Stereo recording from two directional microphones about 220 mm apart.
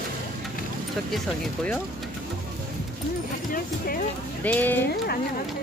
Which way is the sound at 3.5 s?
40° left (ahead or behind).